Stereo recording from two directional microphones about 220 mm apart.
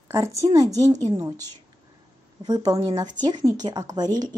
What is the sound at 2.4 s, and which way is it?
Speech, 20° right (ahead or behind).